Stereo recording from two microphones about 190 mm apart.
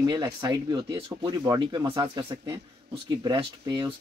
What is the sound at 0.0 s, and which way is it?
Speech, 20° right (ahead or behind).